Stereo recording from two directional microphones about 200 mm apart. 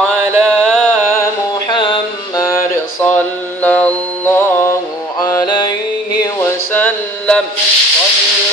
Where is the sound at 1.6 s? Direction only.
25° left (ahead or behind); by 7.4 s 10° left (ahead or behind).